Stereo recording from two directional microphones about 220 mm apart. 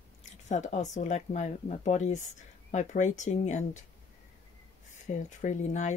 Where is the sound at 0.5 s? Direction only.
30° left (ahead or behind).